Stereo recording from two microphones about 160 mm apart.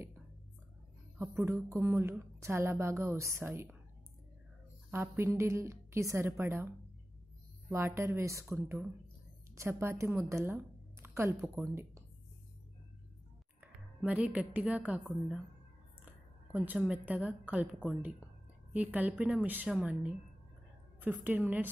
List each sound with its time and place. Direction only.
1.1 s a woman's voice: 15° right (ahead or behind)
4.9 s a woman's voice: 15° right (ahead or behind)
7.7 s a woman's voice: 15° right (ahead or behind)
13.6 s a woman's voice: 10° right (ahead or behind)
18.7 s a woman's voice: 10° right (ahead or behind)